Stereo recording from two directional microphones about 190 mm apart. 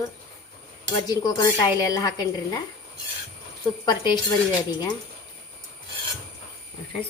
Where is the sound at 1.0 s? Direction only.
20° left (ahead or behind).